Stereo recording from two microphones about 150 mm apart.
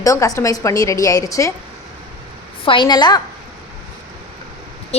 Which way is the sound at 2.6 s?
35° left (ahead or behind).